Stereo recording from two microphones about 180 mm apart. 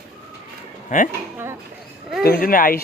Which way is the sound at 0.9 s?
40° left (ahead or behind).